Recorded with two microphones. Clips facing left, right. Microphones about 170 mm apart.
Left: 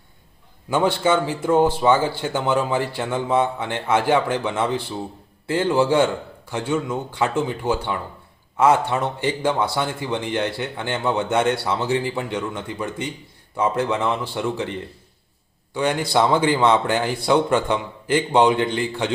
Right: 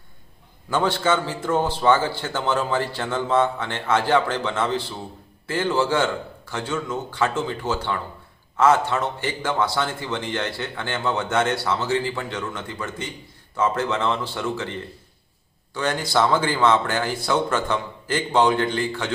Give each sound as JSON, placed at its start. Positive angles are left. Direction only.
{"t": 0.7, "sound": "a man's voice", "side_deg": 15}